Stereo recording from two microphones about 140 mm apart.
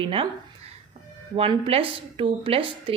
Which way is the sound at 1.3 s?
40° right (ahead or behind).